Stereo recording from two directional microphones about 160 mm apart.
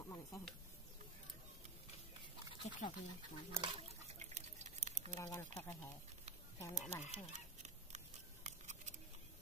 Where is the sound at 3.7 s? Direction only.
45° right (ahead or behind).